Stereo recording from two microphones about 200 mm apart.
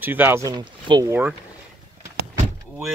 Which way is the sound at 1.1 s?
10° right (ahead or behind).